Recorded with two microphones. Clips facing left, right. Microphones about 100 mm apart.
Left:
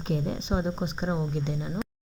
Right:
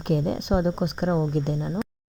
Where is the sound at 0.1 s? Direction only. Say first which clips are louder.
Right 5 dB; 60° right (ahead or behind).